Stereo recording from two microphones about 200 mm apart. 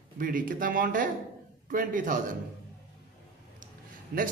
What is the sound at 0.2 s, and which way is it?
A woman's voice, 45° right (ahead or behind).